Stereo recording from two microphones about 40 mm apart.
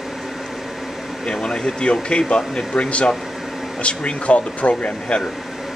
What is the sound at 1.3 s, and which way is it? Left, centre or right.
Speech, left.